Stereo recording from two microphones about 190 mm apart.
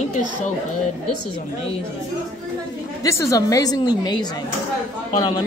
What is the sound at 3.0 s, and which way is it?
A woman's voice, 15° left (ahead or behind).